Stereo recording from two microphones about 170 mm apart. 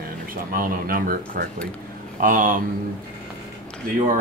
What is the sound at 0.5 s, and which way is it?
Speech, 55° right (ahead or behind).